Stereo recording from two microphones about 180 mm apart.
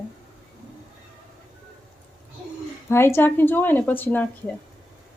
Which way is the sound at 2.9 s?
15° left (ahead or behind).